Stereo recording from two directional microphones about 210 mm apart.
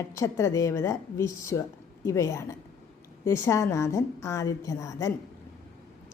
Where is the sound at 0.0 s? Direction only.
15° left (ahead or behind).